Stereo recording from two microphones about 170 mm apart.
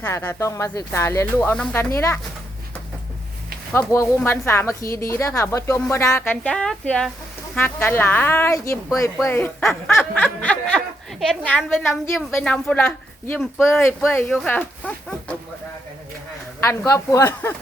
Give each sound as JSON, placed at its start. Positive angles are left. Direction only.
{"t": 0.0, "sound": "a woman's voice", "side_deg": 15}
{"t": 3.7, "sound": "a woman's voice", "side_deg": 10}
{"t": 16.6, "sound": "a woman's voice", "side_deg": 15}